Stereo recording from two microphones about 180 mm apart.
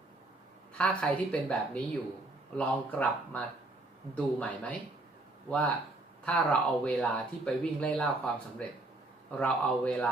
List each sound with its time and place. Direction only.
0.8 s speech: 5° left (ahead or behind)